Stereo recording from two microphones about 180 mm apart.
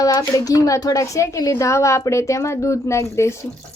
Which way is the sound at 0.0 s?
20° left (ahead or behind).